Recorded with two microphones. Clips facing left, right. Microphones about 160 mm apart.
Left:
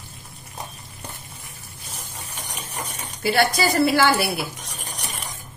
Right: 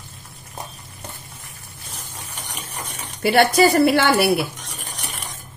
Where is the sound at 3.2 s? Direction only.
60° right (ahead or behind).